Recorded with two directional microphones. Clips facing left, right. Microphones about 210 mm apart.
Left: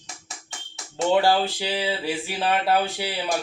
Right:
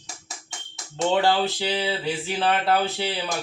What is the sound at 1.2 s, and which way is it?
Speech, 10° left (ahead or behind).